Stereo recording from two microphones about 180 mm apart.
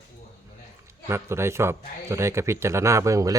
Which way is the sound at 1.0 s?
15° right (ahead or behind).